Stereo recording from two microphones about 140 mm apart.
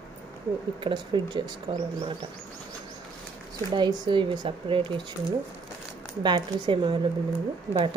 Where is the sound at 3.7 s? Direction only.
30° right (ahead or behind).